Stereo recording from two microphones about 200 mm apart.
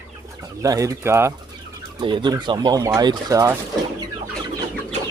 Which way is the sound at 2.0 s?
25° right (ahead or behind).